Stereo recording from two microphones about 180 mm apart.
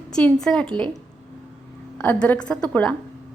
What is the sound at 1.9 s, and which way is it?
A woman's voice, 10° left (ahead or behind).